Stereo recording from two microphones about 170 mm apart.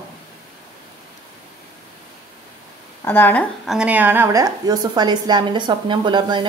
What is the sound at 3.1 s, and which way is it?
Speech, 10° left (ahead or behind).